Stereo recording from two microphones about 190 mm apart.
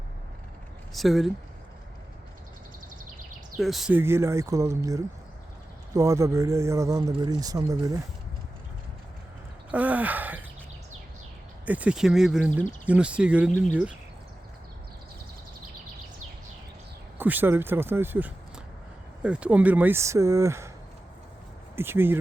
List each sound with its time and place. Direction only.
0.9 s speech: centre (ahead or behind)
3.6 s speech: centre (ahead or behind); by 8.0 s 20° right (ahead or behind)
9.7 s gasp: 10° right (ahead or behind)
11.6 s speech: 10° right (ahead or behind)
17.2 s speech: 10° right (ahead or behind)
21.8 s speech: 10° right (ahead or behind)